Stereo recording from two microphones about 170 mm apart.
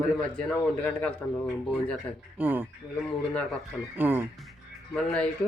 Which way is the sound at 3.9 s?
10° right (ahead or behind).